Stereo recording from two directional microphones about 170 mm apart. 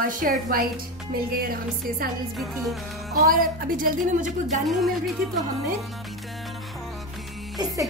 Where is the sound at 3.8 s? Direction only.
50° right (ahead or behind).